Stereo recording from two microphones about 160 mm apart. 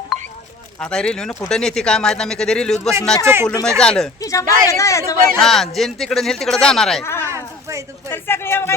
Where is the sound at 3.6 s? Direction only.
5° left (ahead or behind).